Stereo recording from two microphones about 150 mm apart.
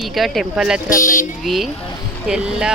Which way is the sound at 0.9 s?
65° left (ahead or behind).